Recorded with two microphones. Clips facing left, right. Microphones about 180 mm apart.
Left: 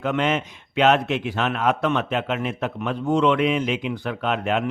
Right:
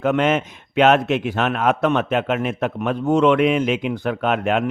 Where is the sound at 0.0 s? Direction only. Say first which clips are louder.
Right 4 dB; 50° right (ahead or behind).